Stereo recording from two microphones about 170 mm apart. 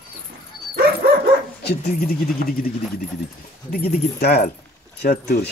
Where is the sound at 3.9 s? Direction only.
70° left (ahead or behind).